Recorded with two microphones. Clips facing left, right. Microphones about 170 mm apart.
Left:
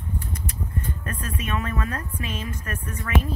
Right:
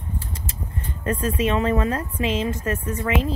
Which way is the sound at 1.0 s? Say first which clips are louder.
Right 9 dB; 20° right (ahead or behind).